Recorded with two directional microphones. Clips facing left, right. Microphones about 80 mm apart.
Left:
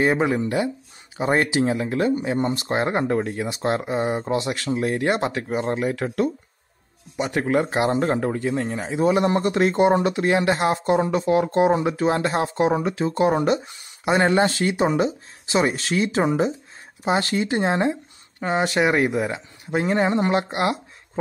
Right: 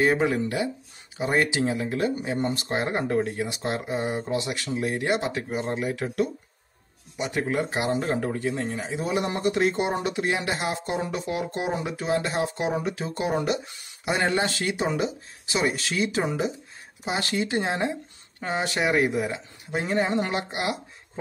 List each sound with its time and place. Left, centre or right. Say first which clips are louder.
0.0 s speech: left 2 dB; left
2.1 s speech: left 4 dB; left